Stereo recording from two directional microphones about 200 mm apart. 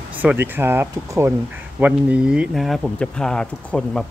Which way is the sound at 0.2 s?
10° right (ahead or behind).